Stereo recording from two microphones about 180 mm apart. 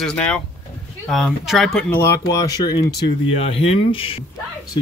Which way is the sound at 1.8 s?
15° left (ahead or behind).